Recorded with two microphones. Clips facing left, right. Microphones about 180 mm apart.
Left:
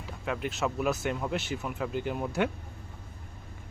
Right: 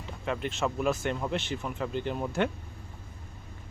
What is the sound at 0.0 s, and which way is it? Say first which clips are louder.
Speech: right 1 dB; 5° left (ahead or behind).